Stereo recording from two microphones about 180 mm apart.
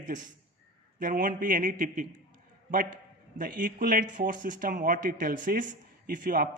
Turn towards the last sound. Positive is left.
turn(degrees=-50)  # may be behind; listen again after turning